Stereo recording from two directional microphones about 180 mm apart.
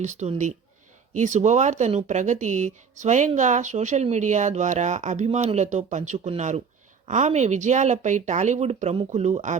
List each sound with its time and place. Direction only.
0.0 s speech: 40° right (ahead or behind)